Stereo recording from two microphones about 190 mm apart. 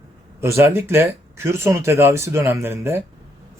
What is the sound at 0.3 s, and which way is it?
Speech, 15° right (ahead or behind).